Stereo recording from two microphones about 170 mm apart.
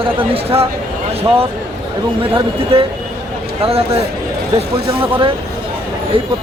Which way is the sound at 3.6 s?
35° right (ahead or behind).